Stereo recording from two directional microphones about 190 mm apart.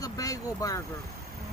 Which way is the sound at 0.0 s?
20° left (ahead or behind).